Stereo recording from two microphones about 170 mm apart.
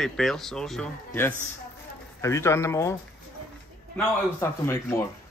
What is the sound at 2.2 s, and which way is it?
Speech, 15° left (ahead or behind).